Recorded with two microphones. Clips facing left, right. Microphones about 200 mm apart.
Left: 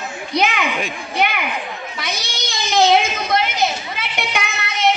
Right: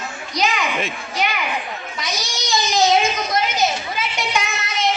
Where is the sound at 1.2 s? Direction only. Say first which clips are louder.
Left 3 dB; 60° left (ahead or behind).